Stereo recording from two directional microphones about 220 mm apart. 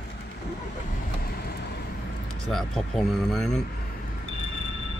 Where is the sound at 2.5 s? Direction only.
Centre (ahead or behind).